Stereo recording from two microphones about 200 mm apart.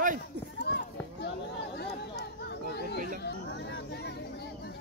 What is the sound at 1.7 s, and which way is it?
Chatter, 55° left (ahead or behind).